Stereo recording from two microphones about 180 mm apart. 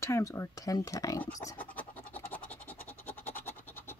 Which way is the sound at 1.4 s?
15° left (ahead or behind).